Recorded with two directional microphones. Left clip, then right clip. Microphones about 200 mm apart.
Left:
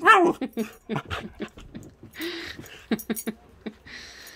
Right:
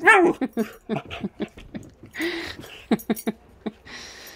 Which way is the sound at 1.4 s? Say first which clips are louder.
Right 4 dB; 15° right (ahead or behind).